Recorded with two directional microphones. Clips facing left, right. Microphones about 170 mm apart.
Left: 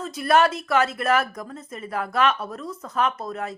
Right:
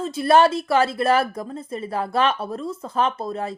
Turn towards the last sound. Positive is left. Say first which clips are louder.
# right 2 dB
turn(degrees=-30)  # may be behind; listen again after turning